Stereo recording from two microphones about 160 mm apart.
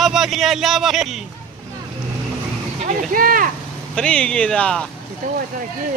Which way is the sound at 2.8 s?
60° right (ahead or behind).